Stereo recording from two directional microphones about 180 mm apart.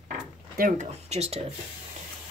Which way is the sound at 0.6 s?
40° right (ahead or behind).